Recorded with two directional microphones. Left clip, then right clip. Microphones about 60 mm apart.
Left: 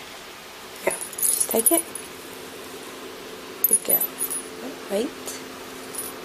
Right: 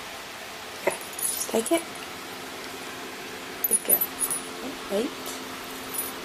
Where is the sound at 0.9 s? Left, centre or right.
Left.